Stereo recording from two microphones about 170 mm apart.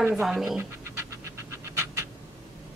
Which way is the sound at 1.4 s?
15° right (ahead or behind).